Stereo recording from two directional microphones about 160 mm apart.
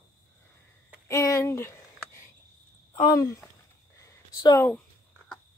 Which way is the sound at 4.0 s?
20° left (ahead or behind).